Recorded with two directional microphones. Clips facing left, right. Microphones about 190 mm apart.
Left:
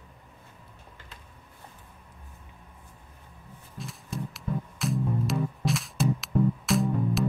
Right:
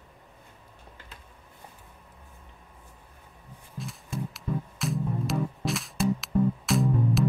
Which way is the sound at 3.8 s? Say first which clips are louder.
Right 1 dB; centre (ahead or behind).